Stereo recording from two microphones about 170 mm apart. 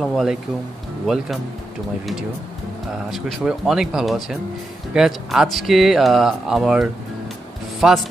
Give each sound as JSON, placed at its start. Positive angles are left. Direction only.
{"t": 0.0, "sound": "speech", "side_deg": 0}
{"t": 3.1, "sound": "speech", "side_deg": 0}